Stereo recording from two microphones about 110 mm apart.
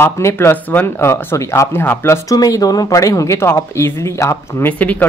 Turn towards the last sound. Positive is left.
turn(degrees=15)  # may be behind; listen again after turning